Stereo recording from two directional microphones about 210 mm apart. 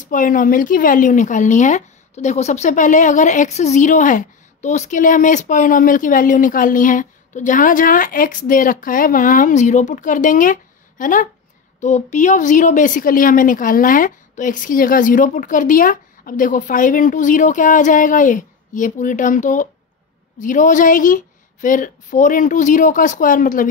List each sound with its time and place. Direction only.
0.0 s speech: 40° left (ahead or behind)